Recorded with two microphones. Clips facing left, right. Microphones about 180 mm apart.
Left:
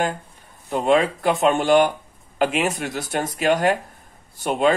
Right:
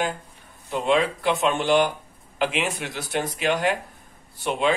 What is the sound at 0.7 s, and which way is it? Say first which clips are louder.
Speech: left 3 dB; 50° left (ahead or behind).